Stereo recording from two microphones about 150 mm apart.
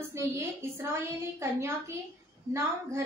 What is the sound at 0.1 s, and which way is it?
A woman's voice, 20° right (ahead or behind).